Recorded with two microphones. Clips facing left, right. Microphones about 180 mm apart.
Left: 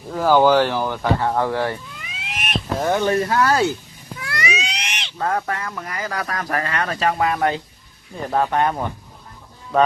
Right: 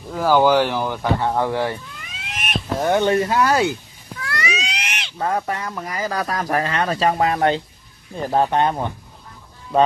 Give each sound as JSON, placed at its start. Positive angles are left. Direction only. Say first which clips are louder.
{"t": 0.1, "sound": "speech", "louder": "left 1 dB", "side_deg": -5}
{"t": 2.0, "sound": "cat", "louder": "left 1 dB", "side_deg": 0}
{"t": 2.8, "sound": "speech", "louder": "right 2 dB", "side_deg": -20}
{"t": 4.2, "sound": "cat", "louder": "even", "side_deg": 15}
{"t": 4.6, "sound": "a sound", "louder": "even", "side_deg": -5}
{"t": 5.1, "sound": "speech", "louder": "even", "side_deg": -15}